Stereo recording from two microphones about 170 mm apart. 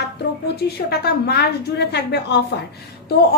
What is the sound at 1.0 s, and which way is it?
A woman's voice, 70° left (ahead or behind).